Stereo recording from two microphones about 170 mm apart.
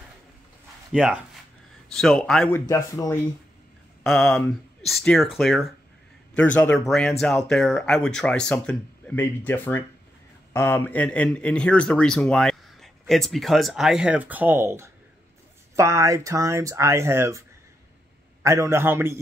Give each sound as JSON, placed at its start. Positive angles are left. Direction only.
{"t": 0.9, "sound": "a man's voice", "side_deg": -5}
{"t": 2.7, "sound": "a man's voice", "side_deg": 15}
{"t": 4.0, "sound": "a man's voice", "side_deg": 5}
{"t": 18.4, "sound": "speech", "side_deg": -15}